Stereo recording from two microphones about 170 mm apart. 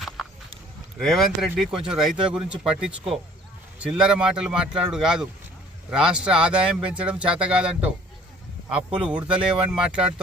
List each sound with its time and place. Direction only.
0.9 s speech: centre (ahead or behind)
3.8 s speech: 5° right (ahead or behind)